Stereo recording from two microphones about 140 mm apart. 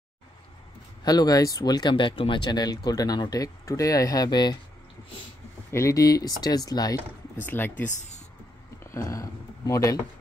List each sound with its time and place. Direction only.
1.0 s speech: 25° left (ahead or behind)
5.7 s speech: 20° left (ahead or behind)
7.3 s speech: 15° left (ahead or behind)
8.9 s speech: 20° left (ahead or behind)